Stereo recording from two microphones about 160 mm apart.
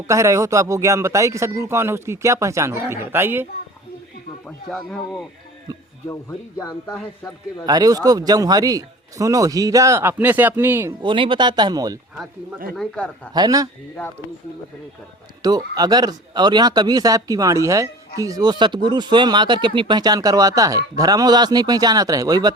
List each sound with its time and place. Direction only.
0.1 s speech: 20° right (ahead or behind)
4.4 s speech: 5° left (ahead or behind)
7.6 s speech: 25° right (ahead or behind)
11.0 s speech: 30° right (ahead or behind)
12.1 s speech: 5° right (ahead or behind)
13.3 s speech: 25° right (ahead or behind)
15.4 s speech: 25° right (ahead or behind)